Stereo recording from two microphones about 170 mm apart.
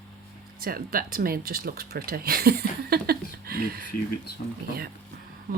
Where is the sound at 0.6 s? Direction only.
60° right (ahead or behind).